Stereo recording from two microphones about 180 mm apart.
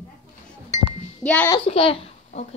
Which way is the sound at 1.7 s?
30° left (ahead or behind).